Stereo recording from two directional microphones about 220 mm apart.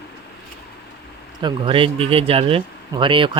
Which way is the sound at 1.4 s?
20° right (ahead or behind).